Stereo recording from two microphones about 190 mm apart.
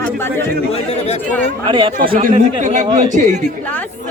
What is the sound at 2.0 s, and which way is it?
Speech, 45° right (ahead or behind).